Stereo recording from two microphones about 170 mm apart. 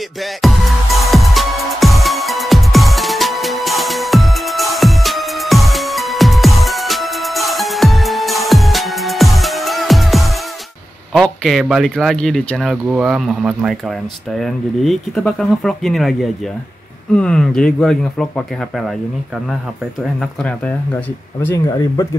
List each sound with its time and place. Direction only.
0.2 s music: centre (ahead or behind)
11.1 s speech: centre (ahead or behind)
21.6 s speech: 20° left (ahead or behind)